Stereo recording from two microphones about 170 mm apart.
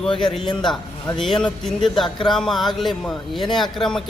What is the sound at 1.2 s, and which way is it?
A man's voice, 5° left (ahead or behind).